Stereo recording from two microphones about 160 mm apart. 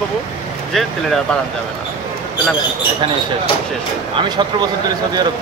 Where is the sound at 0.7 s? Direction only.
Centre (ahead or behind).